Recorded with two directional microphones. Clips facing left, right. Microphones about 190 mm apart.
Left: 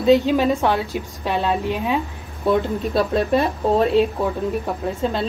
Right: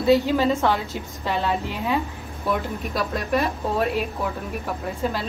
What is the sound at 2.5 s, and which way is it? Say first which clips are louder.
Speech: left 7 dB; 30° left (ahead or behind).